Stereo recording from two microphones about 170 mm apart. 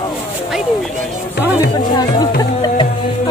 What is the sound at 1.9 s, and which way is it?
Music, 25° left (ahead or behind).